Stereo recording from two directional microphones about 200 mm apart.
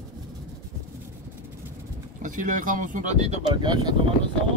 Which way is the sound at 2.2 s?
40° right (ahead or behind).